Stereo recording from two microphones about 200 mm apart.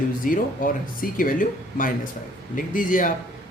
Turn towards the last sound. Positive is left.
turn(degrees=40)  # may be behind; listen again after turning